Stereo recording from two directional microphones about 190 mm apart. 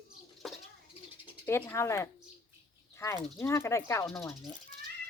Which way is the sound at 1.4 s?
15° left (ahead or behind).